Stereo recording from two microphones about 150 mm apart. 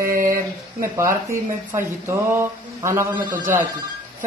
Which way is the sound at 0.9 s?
20° right (ahead or behind).